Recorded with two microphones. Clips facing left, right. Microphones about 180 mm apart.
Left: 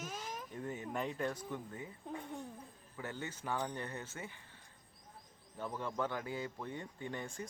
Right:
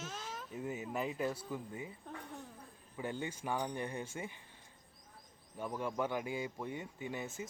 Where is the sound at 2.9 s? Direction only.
15° right (ahead or behind).